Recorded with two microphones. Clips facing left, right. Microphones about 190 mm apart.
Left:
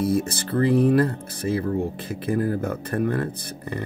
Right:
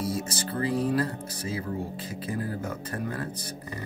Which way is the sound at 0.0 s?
55° left (ahead or behind).